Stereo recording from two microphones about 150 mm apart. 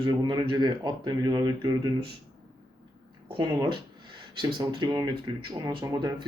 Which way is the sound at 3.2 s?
30° right (ahead or behind).